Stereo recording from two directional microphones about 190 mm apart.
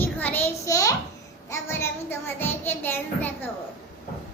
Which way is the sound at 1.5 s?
15° left (ahead or behind).